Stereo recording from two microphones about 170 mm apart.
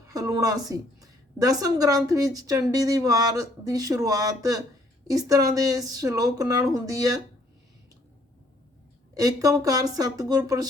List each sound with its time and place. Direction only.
0.0 s a woman's voice: 20° right (ahead or behind)
9.1 s a woman's voice: 20° right (ahead or behind)